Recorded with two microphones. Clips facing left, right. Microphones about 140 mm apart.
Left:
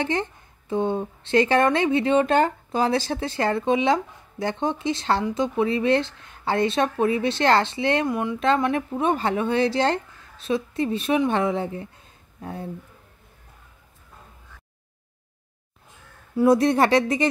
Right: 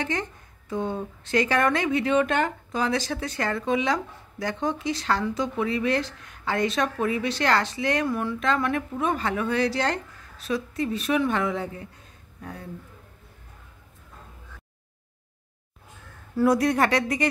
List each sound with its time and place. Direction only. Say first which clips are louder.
0.0 s speech: left 4 dB; 25° left (ahead or behind)
16.3 s speech: left 3 dB; 25° left (ahead or behind)